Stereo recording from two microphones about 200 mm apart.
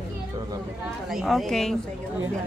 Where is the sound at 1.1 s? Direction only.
Centre (ahead or behind).